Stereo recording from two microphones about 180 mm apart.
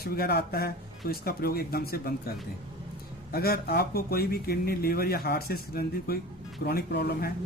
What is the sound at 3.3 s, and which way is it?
A man's voice, 60° left (ahead or behind).